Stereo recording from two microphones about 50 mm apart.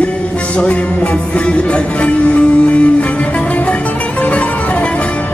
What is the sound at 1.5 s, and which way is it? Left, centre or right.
Music, left.